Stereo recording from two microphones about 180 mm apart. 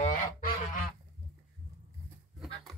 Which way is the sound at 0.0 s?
50° left (ahead or behind).